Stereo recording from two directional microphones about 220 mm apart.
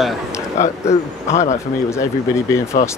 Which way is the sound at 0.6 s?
30° left (ahead or behind).